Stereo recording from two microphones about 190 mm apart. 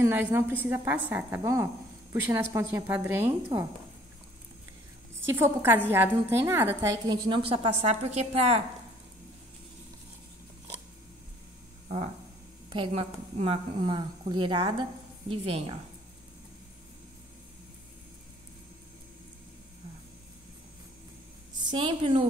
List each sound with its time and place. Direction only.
0.0 s a woman's voice: 10° right (ahead or behind)
5.2 s a woman's voice: 10° right (ahead or behind); by 8.6 s 35° right (ahead or behind)
12.6 s a woman's voice: 25° right (ahead or behind)
21.6 s a woman's voice: 25° right (ahead or behind)